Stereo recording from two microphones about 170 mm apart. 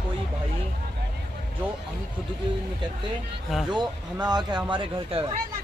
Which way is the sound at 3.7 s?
25° right (ahead or behind).